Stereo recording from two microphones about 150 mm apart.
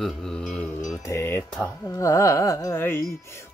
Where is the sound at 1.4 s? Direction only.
5° left (ahead or behind).